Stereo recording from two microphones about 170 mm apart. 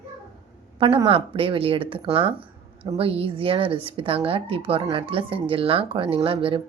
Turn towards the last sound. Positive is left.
turn(degrees=-30)  # may be behind; listen again after turning